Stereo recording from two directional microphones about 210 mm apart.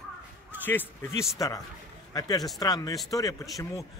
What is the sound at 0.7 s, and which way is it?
A man's voice, 10° left (ahead or behind).